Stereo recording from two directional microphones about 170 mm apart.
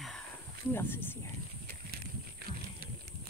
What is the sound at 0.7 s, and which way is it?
Speech, 10° left (ahead or behind).